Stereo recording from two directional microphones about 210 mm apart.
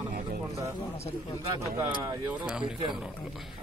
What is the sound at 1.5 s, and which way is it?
Speech, 15° right (ahead or behind).